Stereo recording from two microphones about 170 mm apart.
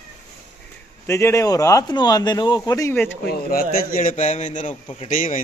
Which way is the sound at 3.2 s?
60° left (ahead or behind).